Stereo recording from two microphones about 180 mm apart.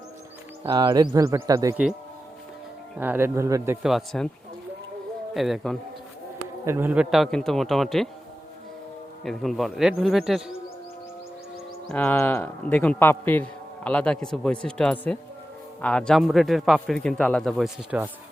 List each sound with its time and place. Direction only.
0.6 s speech: 25° right (ahead or behind)
3.0 s speech: 10° right (ahead or behind)
3.8 s a man's voice: centre (ahead or behind)
5.3 s a man's voice: centre (ahead or behind)
6.7 s a man's voice: 10° right (ahead or behind)
9.2 s a man's voice: centre (ahead or behind)
11.9 s a man's voice: 10° left (ahead or behind)
17.9 s speech: 5° right (ahead or behind)